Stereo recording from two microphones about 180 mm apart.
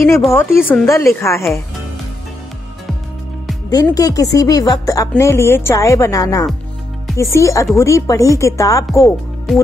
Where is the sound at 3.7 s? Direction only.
20° left (ahead or behind).